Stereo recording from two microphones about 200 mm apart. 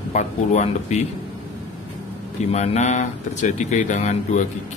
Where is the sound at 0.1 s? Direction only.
35° left (ahead or behind).